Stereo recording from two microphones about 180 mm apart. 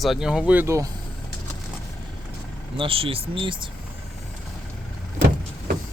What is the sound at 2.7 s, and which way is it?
Speech, 30° right (ahead or behind).